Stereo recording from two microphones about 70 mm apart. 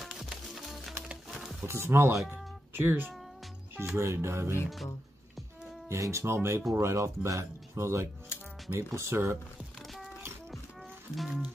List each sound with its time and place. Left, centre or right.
0.0 s music: centre
1.7 s speech: right
2.3 s a sound: right
3.7 s speech: right
5.9 s speech: right
11.1 s speech: centre